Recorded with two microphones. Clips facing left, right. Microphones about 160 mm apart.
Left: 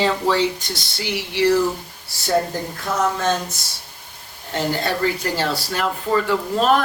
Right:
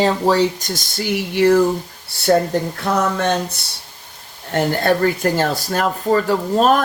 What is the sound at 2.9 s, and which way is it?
Speech, 55° right (ahead or behind).